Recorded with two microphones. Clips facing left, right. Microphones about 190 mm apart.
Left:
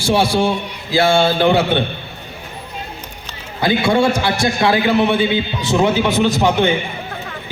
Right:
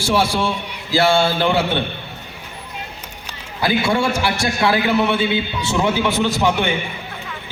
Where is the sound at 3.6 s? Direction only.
20° left (ahead or behind).